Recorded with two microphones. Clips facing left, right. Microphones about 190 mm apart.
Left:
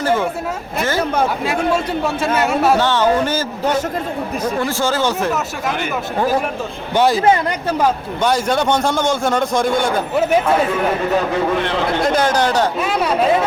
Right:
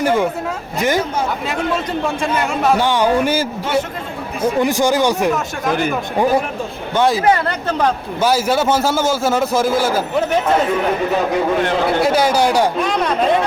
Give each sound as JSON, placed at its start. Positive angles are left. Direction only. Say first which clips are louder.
{"t": 0.0, "sound": "speech", "louder": "right 2 dB", "side_deg": -15}
{"t": 1.5, "sound": "a man's voice", "louder": "left 2 dB", "side_deg": 5}
{"t": 2.7, "sound": "speech", "louder": "even", "side_deg": -15}
{"t": 4.6, "sound": "speech", "louder": "right 4 dB", "side_deg": -15}
{"t": 7.4, "sound": "a man's voice", "louder": "left 1 dB", "side_deg": 10}
{"t": 8.2, "sound": "a man's voice", "louder": "right 1 dB", "side_deg": -5}
{"t": 12.0, "sound": "speech", "louder": "even", "side_deg": -10}
{"t": 12.8, "sound": "a man's voice", "louder": "even", "side_deg": 5}